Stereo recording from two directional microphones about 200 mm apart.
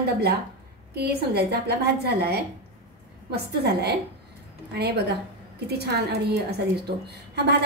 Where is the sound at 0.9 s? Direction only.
55° right (ahead or behind).